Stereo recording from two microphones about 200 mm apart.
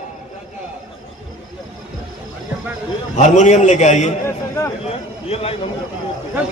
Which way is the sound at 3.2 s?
35° left (ahead or behind).